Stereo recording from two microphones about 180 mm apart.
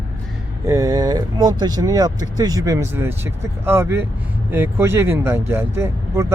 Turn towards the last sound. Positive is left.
turn(degrees=-15)  # may be behind; listen again after turning